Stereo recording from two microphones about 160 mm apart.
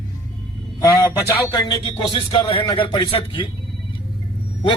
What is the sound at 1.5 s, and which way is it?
A man's voice, 30° left (ahead or behind).